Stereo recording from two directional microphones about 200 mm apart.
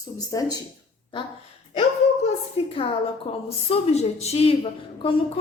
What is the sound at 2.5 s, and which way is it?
A woman's voice, 30° left (ahead or behind).